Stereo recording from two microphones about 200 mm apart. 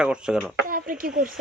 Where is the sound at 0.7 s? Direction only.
45° right (ahead or behind).